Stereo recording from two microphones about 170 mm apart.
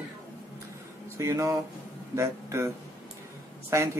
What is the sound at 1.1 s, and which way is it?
Speech, 15° right (ahead or behind).